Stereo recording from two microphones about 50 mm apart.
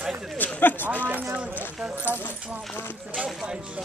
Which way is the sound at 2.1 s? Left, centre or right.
Left.